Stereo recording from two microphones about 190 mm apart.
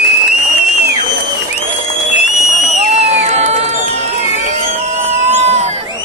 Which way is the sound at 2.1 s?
40° left (ahead or behind).